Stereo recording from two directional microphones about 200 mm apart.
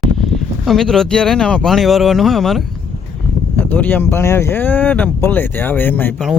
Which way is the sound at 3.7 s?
10° left (ahead or behind).